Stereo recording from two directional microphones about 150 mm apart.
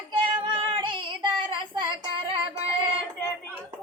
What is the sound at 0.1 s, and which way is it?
Child singing, 30° right (ahead or behind).